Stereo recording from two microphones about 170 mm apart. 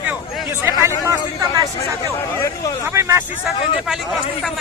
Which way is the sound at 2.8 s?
15° right (ahead or behind).